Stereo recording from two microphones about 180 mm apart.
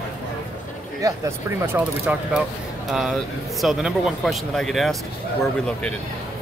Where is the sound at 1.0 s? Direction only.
20° right (ahead or behind).